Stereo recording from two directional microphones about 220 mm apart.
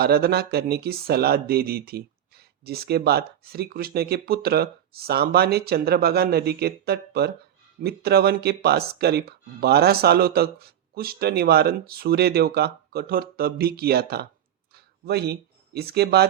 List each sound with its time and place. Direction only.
0.0 s speech: 45° right (ahead or behind)